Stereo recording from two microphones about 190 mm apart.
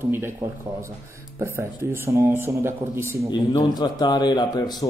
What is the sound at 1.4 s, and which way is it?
Speech, 15° right (ahead or behind).